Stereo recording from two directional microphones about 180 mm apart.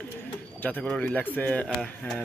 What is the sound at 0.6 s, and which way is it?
Speech, 5° left (ahead or behind).